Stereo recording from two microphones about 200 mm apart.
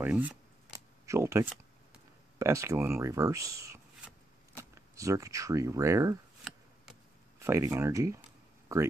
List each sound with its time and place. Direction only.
0.0 s speech: 5° right (ahead or behind)
7.3 s speech: 15° right (ahead or behind)